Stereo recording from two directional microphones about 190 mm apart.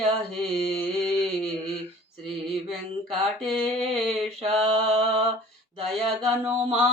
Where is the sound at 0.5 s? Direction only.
Centre (ahead or behind).